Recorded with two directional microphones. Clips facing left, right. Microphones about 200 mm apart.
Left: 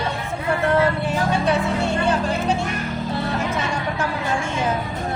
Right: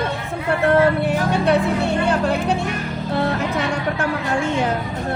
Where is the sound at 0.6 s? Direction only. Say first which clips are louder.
Right 4 dB; 60° right (ahead or behind).